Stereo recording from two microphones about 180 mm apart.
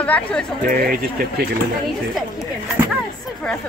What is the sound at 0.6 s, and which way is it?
Speech, 50° right (ahead or behind).